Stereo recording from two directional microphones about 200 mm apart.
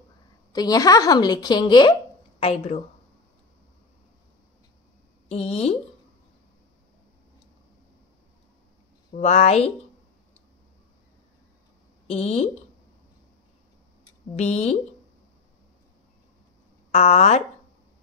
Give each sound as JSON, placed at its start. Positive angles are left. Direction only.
{"t": 0.5, "sound": "a woman's voice", "side_deg": 20}
{"t": 5.3, "sound": "a woman's voice", "side_deg": 30}
{"t": 9.1, "sound": "a woman's voice", "side_deg": 35}
{"t": 12.1, "sound": "a woman's voice", "side_deg": 35}
{"t": 14.3, "sound": "a woman's voice", "side_deg": 35}
{"t": 16.9, "sound": "a woman's voice", "side_deg": 35}